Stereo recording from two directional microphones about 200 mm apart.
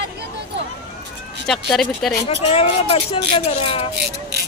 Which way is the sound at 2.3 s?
30° left (ahead or behind).